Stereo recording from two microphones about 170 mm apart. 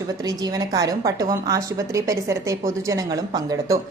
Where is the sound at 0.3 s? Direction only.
20° right (ahead or behind).